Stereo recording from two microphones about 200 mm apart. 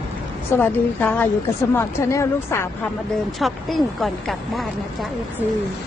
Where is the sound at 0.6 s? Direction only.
10° left (ahead or behind).